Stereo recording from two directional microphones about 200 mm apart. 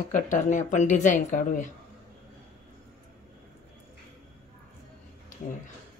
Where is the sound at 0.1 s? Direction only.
40° left (ahead or behind).